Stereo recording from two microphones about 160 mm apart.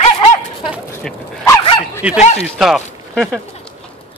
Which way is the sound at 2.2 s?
45° left (ahead or behind).